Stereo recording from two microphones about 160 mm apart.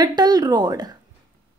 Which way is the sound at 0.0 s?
25° right (ahead or behind).